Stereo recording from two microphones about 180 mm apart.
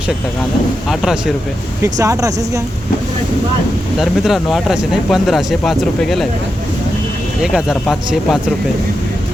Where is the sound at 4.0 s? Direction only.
Centre (ahead or behind).